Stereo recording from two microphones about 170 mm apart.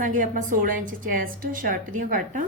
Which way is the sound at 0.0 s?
50° right (ahead or behind).